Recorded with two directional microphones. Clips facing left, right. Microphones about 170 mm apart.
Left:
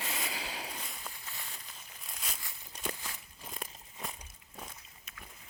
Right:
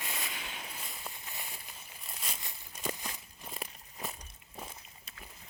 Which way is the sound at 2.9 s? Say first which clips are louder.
Right 3 dB; 15° right (ahead or behind).